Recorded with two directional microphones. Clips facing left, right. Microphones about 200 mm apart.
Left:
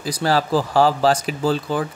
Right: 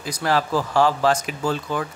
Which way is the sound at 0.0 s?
35° left (ahead or behind).